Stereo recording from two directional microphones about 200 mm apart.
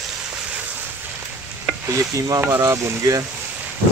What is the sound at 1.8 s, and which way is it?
Speech, 15° right (ahead or behind).